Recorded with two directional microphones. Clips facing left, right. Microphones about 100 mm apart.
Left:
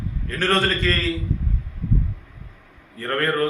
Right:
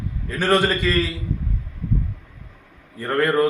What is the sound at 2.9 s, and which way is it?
Speech, 10° right (ahead or behind).